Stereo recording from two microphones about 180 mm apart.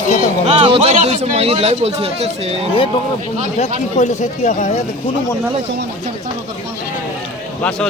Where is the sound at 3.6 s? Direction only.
40° left (ahead or behind).